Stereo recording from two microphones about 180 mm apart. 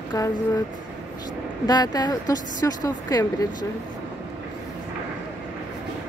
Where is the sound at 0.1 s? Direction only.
20° left (ahead or behind).